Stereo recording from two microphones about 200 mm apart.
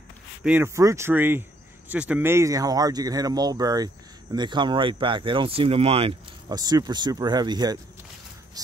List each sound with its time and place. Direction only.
0.4 s speech: 10° right (ahead or behind)